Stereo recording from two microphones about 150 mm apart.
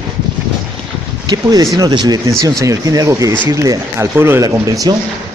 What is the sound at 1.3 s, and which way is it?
Speech, 25° right (ahead or behind).